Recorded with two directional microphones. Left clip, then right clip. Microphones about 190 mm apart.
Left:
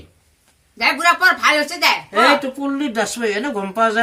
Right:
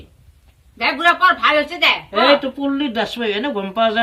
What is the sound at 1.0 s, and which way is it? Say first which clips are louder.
Speech: right 1 dB; 20° left (ahead or behind).